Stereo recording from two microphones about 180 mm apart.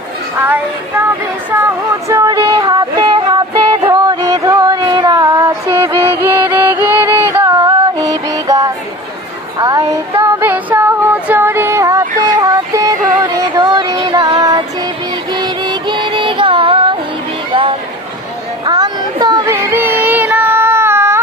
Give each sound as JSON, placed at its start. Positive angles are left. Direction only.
{"t": 0.3, "sound": "a woman's voice", "side_deg": -10}
{"t": 2.0, "sound": "female singing", "side_deg": -20}
{"t": 12.4, "sound": "music", "side_deg": -20}
{"t": 17.5, "sound": "a sound", "side_deg": -30}
{"t": 18.6, "sound": "child singing", "side_deg": -20}